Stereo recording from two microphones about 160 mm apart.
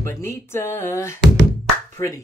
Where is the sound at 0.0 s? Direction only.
15° left (ahead or behind).